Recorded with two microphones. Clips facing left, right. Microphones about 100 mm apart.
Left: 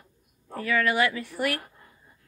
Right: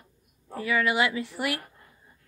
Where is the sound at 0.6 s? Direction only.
15° right (ahead or behind).